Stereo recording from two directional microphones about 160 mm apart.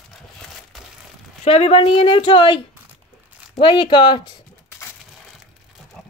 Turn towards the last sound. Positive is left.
turn(degrees=30)  # may be behind; listen again after turning